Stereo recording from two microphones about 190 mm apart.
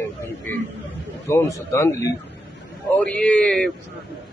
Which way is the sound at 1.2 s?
15° left (ahead or behind).